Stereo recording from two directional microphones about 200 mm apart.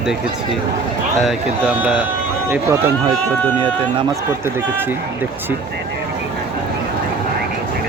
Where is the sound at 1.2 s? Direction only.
5° right (ahead or behind).